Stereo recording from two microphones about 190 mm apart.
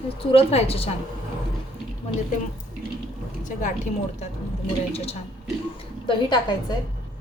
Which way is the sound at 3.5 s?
40° left (ahead or behind).